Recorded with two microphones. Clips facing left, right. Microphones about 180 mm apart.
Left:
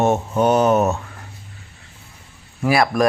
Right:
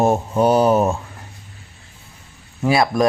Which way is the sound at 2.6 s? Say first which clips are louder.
Even; 25° right (ahead or behind).